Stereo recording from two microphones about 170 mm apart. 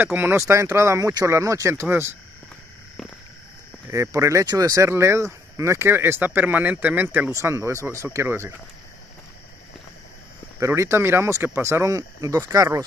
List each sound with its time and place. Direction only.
0.0 s speech: 10° right (ahead or behind)
3.0 s a sound: centre (ahead or behind)
3.9 s speech: 15° right (ahead or behind)
10.6 s speech: 15° right (ahead or behind)